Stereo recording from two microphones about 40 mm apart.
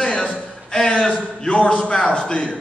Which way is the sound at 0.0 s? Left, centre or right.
Left.